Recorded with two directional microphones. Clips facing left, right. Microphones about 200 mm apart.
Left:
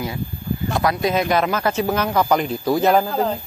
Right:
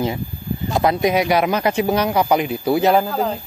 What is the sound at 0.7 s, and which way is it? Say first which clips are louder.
Speech: right 4 dB; 25° right (ahead or behind).